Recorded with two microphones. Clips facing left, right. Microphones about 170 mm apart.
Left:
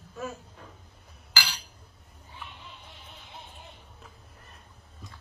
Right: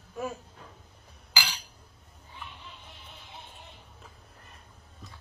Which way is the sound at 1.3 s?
15° right (ahead or behind).